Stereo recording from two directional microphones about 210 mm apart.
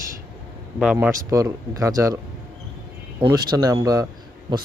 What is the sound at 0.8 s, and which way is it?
Speech, 5° right (ahead or behind).